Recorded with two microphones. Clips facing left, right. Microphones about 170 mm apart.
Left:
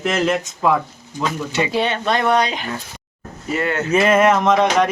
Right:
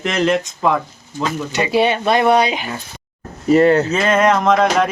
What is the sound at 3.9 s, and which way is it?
Speech, 10° left (ahead or behind).